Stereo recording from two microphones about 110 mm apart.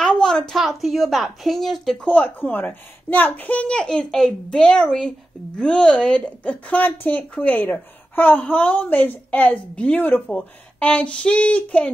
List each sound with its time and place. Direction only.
0.0 s speech: 5° left (ahead or behind)